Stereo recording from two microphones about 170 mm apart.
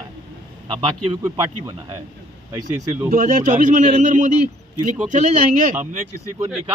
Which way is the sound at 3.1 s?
50° right (ahead or behind).